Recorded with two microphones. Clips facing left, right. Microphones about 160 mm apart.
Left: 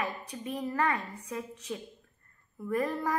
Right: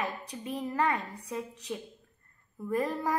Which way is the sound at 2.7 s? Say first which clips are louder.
Even; 20° right (ahead or behind).